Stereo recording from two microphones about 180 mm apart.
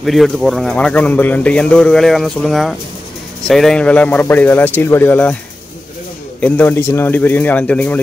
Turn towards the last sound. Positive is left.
turn(degrees=10)  # may be behind; listen again after turning